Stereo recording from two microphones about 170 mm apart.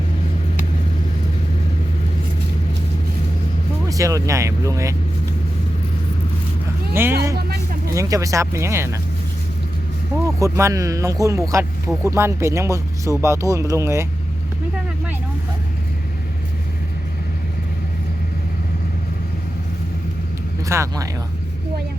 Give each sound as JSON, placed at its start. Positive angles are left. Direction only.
{"t": 3.8, "sound": "speech", "side_deg": -20}
{"t": 6.9, "sound": "speech", "side_deg": -15}
{"t": 10.2, "sound": "speech", "side_deg": -20}
{"t": 20.7, "sound": "speech", "side_deg": -15}